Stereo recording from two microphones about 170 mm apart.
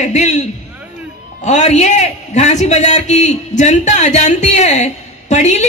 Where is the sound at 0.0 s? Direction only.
40° left (ahead or behind).